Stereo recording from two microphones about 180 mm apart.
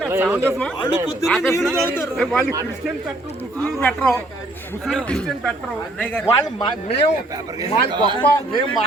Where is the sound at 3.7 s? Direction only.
10° left (ahead or behind).